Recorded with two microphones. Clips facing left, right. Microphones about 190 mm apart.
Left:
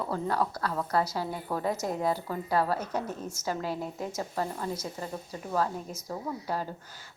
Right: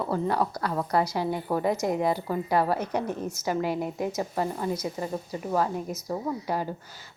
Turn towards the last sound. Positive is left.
turn(degrees=-10)  # may be behind; listen again after turning